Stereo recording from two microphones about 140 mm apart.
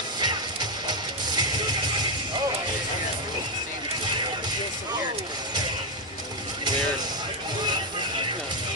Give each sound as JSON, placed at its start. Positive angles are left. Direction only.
{"t": 0.2, "sound": "music", "side_deg": -30}